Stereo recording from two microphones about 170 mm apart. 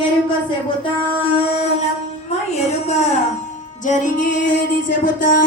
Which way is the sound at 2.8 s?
40° left (ahead or behind).